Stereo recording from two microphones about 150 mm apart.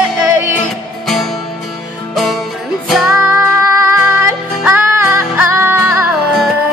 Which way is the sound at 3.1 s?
15° right (ahead or behind).